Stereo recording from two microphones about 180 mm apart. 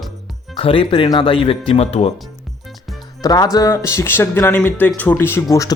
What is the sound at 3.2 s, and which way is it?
Speech, 20° left (ahead or behind).